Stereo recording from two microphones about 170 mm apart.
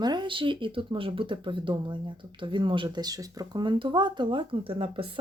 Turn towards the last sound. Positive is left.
turn(degrees=-30)  # may be behind; listen again after turning